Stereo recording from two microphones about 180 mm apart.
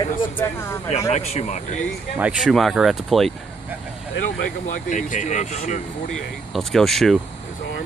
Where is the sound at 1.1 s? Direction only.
35° left (ahead or behind).